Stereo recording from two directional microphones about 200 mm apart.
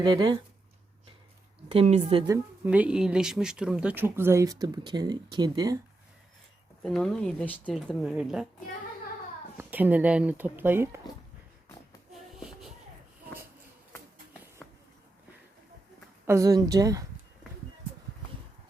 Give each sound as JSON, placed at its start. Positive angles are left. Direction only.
{"t": 0.0, "sound": "a woman's voice", "side_deg": -20}
{"t": 1.7, "sound": "a woman's voice", "side_deg": -30}
{"t": 2.3, "sound": "speech", "side_deg": -5}
{"t": 6.8, "sound": "speech", "side_deg": 5}
{"t": 9.6, "sound": "speech", "side_deg": -10}
{"t": 12.1, "sound": "a sound", "side_deg": 0}
{"t": 16.2, "sound": "speech", "side_deg": -15}